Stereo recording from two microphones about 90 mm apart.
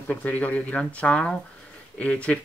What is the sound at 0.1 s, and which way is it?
Speech, 15° left (ahead or behind).